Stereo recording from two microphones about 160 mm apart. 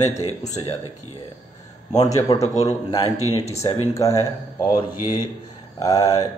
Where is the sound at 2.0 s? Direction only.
20° left (ahead or behind).